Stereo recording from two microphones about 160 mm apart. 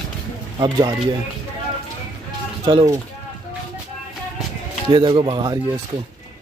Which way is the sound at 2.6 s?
25° right (ahead or behind).